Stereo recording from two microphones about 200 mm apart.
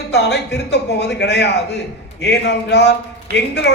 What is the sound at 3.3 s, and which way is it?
Speech, 50° right (ahead or behind).